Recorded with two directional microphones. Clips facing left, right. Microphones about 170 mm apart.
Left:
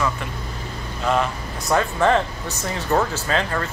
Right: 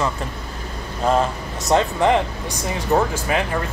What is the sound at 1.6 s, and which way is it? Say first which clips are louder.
Speech: right 2 dB; 20° right (ahead or behind).